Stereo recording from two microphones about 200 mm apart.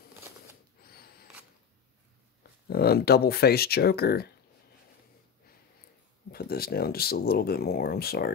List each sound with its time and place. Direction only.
2.7 s speech: 50° left (ahead or behind)
6.3 s speech: 50° left (ahead or behind)